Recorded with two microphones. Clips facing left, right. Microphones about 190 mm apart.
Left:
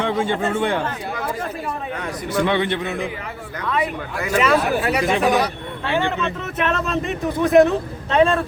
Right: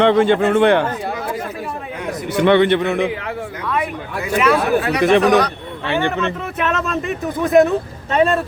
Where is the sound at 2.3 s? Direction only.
65° right (ahead or behind).